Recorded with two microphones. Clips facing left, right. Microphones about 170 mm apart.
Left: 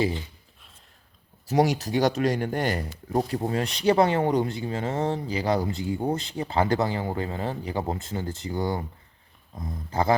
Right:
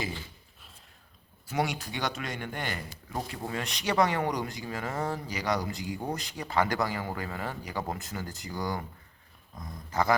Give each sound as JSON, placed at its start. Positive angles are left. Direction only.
{"t": 1.5, "sound": "speech", "side_deg": 40}